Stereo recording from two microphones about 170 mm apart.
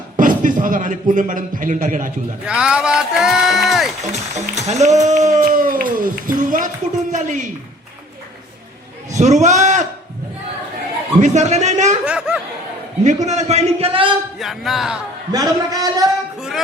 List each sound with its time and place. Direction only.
0.2 s speech: 50° right (ahead or behind)
2.5 s a sound: 5° right (ahead or behind)
4.0 s speech: 40° right (ahead or behind)
5.0 s a sound: 45° right (ahead or behind)
5.5 s a sound: 55° right (ahead or behind)
9.1 s a man's voice: 45° right (ahead or behind)
11.2 s speech: 45° right (ahead or behind)
12.0 s chatter: 5° right (ahead or behind)
13.1 s a man's voice: 45° right (ahead or behind)
14.3 s speech: centre (ahead or behind)
15.3 s a man's voice: 20° right (ahead or behind)